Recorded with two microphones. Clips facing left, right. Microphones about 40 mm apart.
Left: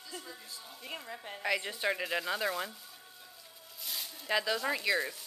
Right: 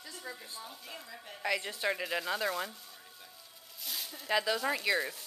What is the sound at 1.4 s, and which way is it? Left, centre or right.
A woman's voice, centre.